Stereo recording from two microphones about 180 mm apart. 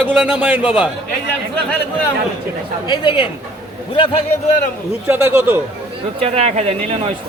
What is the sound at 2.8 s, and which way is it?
Speech, 25° left (ahead or behind).